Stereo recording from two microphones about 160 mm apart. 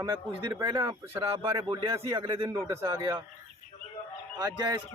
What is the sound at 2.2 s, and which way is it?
Speech, 30° right (ahead or behind).